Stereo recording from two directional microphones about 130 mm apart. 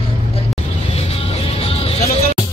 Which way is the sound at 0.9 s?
50° left (ahead or behind).